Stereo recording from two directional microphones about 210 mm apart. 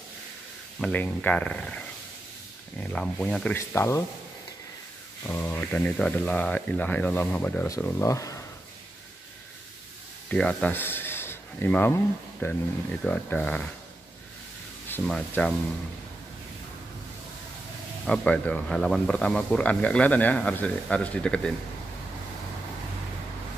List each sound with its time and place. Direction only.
0.7 s speech: 5° left (ahead or behind)
2.8 s speech: 5° left (ahead or behind)
5.2 s speech: 10° left (ahead or behind)
10.3 s speech: 5° left (ahead or behind)
14.9 s speech: 5° left (ahead or behind)
18.0 s speech: 5° left (ahead or behind)